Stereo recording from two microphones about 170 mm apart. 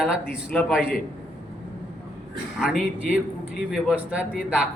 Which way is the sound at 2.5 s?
Centre (ahead or behind).